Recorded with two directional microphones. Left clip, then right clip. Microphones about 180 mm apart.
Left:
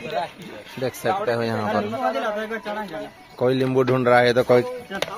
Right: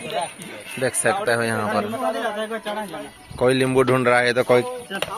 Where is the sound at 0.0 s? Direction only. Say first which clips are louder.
Even; 5° left (ahead or behind).